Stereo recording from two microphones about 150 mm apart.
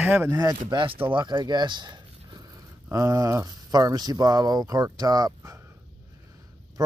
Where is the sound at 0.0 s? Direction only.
10° right (ahead or behind).